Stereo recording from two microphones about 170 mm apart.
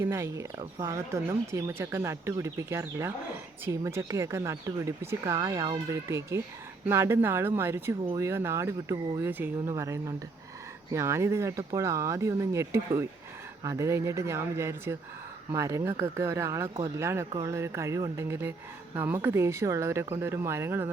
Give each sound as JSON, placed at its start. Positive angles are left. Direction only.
{"t": 0.0, "sound": "speech", "side_deg": -15}